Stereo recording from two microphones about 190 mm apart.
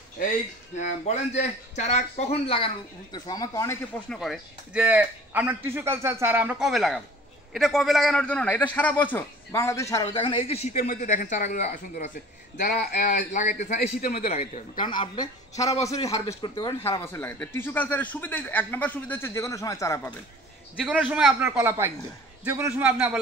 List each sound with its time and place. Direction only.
0.7 s speech: 35° left (ahead or behind); by 3.7 s 20° left (ahead or behind)
4.1 s a man's voice: centre (ahead or behind); by 10.0 s 15° left (ahead or behind)
10.1 s speech: 25° left (ahead or behind)
12.5 s a man's voice: 50° left (ahead or behind)
13.3 s a man's voice: 40° left (ahead or behind); by 20.0 s 15° left (ahead or behind)
20.8 s a man's voice: 5° right (ahead or behind)